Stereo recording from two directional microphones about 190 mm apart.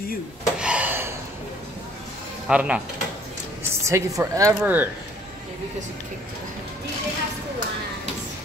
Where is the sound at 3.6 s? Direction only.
15° right (ahead or behind).